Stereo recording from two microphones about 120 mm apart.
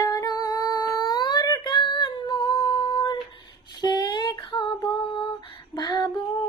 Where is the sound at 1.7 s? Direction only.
45° left (ahead or behind).